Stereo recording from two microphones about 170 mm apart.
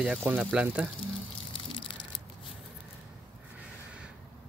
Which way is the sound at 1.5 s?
30° left (ahead or behind).